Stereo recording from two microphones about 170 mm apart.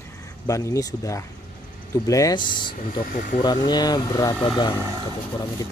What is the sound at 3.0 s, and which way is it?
Speech, 55° left (ahead or behind).